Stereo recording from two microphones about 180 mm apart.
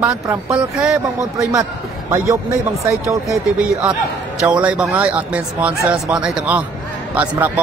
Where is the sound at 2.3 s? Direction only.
15° right (ahead or behind).